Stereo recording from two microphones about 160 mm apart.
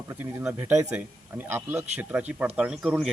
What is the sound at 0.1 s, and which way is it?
A man's voice, 15° right (ahead or behind).